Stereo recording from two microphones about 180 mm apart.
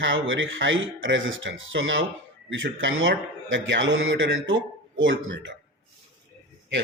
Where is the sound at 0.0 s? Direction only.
90° right.